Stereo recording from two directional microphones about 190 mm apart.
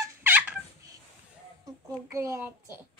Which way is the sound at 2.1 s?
15° right (ahead or behind).